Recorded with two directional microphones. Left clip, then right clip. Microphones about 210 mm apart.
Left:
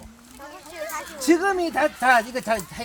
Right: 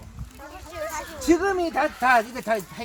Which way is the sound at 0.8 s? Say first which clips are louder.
Even; 15° right (ahead or behind).